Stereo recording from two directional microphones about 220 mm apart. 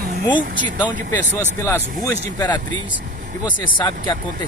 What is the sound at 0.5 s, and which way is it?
Speech, 35° right (ahead or behind).